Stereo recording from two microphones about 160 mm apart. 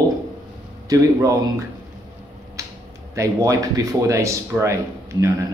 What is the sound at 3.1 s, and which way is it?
Speech, 20° right (ahead or behind).